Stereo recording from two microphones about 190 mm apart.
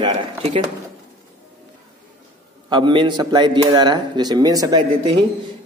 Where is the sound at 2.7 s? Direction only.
25° right (ahead or behind).